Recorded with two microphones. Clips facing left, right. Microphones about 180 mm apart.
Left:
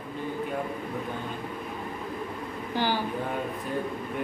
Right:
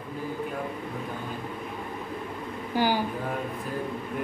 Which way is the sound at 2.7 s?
10° right (ahead or behind).